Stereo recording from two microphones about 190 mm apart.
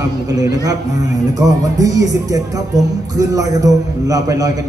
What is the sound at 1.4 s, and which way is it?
A man's voice, 20° right (ahead or behind).